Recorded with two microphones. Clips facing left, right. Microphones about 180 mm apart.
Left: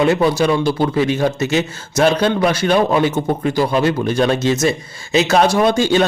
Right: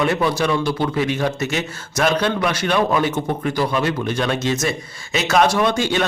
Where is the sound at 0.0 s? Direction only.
30° left (ahead or behind).